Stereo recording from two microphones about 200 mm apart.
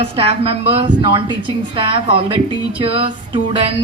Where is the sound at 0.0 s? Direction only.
30° right (ahead or behind).